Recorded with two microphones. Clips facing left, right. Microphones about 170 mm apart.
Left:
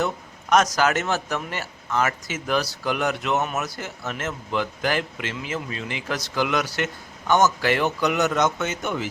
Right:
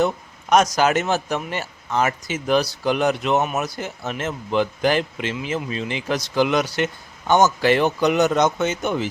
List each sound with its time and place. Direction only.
0.8 s speech: 15° right (ahead or behind)